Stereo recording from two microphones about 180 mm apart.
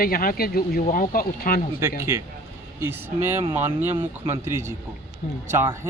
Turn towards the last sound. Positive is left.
turn(degrees=-15)  # may be behind; listen again after turning